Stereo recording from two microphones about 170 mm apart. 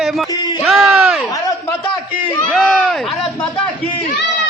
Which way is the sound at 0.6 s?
Centre (ahead or behind).